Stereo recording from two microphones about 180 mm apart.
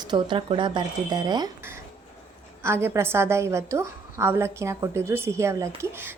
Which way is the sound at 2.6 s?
15° right (ahead or behind).